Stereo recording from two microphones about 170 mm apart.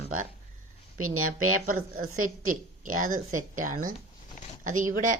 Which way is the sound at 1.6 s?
55° right (ahead or behind).